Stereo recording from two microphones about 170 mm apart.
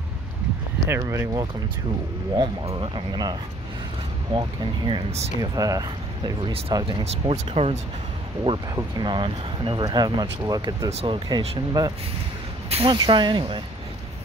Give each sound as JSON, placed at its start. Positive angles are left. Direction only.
{"t": 0.8, "sound": "speech", "side_deg": -15}
{"t": 2.6, "sound": "speech", "side_deg": -30}
{"t": 8.7, "sound": "speech", "side_deg": -25}
{"t": 10.9, "sound": "speech", "side_deg": -40}
{"t": 11.2, "sound": "speech", "side_deg": -25}